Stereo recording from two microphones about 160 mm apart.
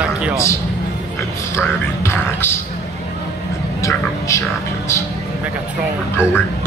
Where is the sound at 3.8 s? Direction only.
20° left (ahead or behind).